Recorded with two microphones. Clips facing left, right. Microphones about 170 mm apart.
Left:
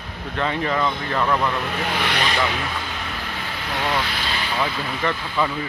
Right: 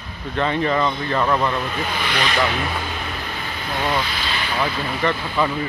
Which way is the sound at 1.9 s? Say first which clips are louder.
Left 1 dB; 70° left (ahead or behind).